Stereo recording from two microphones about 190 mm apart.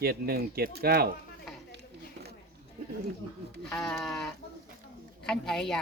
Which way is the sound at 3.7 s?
5° left (ahead or behind).